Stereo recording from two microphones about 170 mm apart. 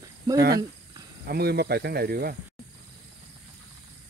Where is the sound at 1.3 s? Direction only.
65° right (ahead or behind).